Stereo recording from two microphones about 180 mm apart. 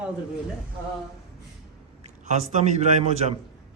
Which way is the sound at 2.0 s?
40° right (ahead or behind).